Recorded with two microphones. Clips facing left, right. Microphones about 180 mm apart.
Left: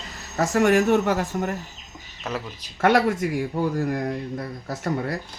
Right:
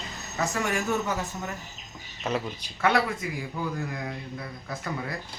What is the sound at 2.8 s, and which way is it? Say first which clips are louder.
Speech: left 6 dB; 45° left (ahead or behind).